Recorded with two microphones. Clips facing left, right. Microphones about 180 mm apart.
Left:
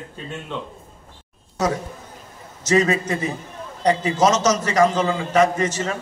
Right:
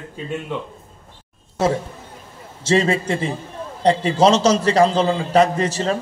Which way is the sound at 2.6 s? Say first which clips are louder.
Right 1 dB; 30° right (ahead or behind).